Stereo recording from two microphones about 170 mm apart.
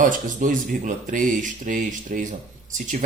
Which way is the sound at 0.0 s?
50° right (ahead or behind).